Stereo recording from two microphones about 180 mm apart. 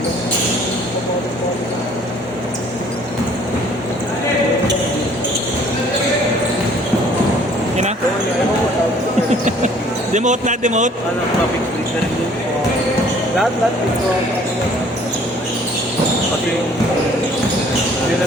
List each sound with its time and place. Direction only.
10.2 s speech: 45° right (ahead or behind)